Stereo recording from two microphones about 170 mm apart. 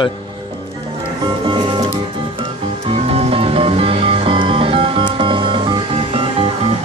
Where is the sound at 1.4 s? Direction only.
30° right (ahead or behind).